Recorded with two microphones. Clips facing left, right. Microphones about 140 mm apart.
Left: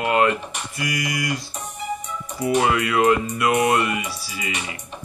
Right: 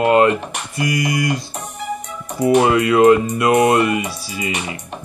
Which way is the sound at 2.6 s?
25° right (ahead or behind).